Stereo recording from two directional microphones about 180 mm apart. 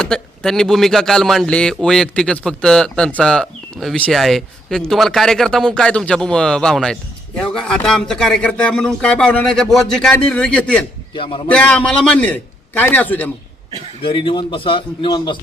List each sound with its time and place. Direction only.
0.0 s a man's voice: 5° left (ahead or behind)
11.1 s a man's voice: 30° left (ahead or behind)
11.4 s a man's voice: 5° left (ahead or behind)
14.0 s a man's voice: 30° left (ahead or behind)